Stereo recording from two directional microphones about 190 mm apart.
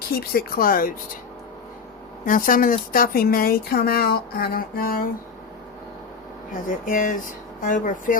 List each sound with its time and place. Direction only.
0.1 s speech: 50° left (ahead or behind)
2.2 s speech: 45° left (ahead or behind)
6.5 s speech: 45° left (ahead or behind)